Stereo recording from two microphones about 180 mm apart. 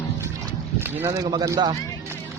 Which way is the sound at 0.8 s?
10° right (ahead or behind).